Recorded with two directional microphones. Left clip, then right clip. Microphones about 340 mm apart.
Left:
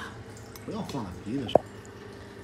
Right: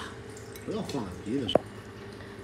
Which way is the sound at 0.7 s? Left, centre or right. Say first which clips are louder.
Right 2 dB; centre.